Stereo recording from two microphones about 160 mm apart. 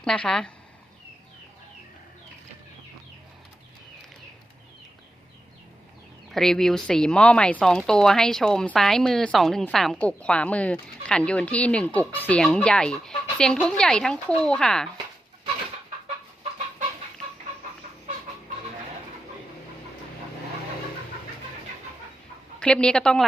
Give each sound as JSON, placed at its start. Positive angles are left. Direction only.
{"t": 0.0, "sound": "speech", "side_deg": 5}
{"t": 6.3, "sound": "speech", "side_deg": 5}
{"t": 22.6, "sound": "speech", "side_deg": 5}